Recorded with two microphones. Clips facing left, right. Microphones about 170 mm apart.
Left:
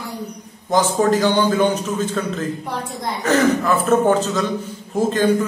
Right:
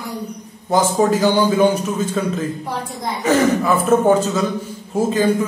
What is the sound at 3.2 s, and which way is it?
A man's voice, 10° right (ahead or behind).